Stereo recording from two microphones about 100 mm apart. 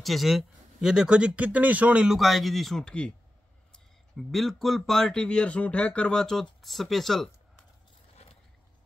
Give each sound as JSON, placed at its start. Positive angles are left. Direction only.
{"t": 0.0, "sound": "speech", "side_deg": 0}